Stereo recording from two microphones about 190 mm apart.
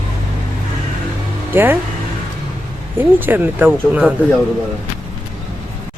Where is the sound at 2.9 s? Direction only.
10° right (ahead or behind).